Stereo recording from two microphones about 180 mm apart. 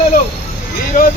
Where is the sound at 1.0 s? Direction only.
45° left (ahead or behind).